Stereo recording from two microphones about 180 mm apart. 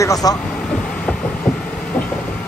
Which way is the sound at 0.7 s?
5° left (ahead or behind).